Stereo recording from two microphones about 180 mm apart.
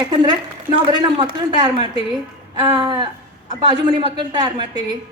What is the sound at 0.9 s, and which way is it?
A woman's voice, 25° right (ahead or behind).